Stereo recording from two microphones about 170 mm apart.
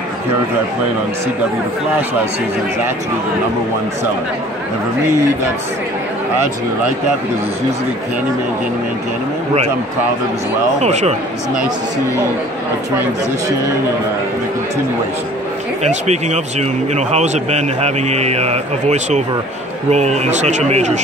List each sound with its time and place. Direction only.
10.8 s speech: 40° right (ahead or behind)
15.8 s speech: 40° right (ahead or behind)